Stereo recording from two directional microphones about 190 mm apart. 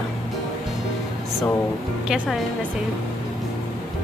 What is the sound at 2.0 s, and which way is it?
Speech, 5° right (ahead or behind).